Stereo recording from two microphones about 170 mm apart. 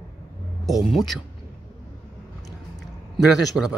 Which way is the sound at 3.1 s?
Centre (ahead or behind).